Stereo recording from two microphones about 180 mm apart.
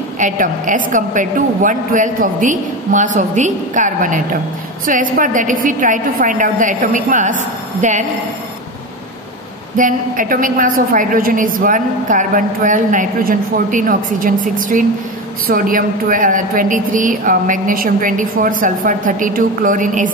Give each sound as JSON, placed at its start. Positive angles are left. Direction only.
{"t": 0.2, "sound": "a woman's voice", "side_deg": -45}
{"t": 9.8, "sound": "a woman's voice", "side_deg": -50}